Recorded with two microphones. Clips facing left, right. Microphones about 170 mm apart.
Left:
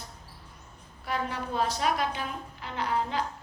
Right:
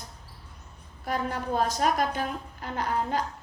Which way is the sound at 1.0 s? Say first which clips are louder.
Right 2 dB; 45° right (ahead or behind).